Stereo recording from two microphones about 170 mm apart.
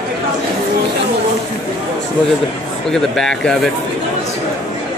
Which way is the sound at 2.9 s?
5° left (ahead or behind).